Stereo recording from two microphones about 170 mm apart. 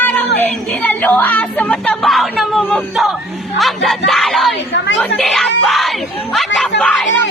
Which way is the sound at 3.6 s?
Centre (ahead or behind).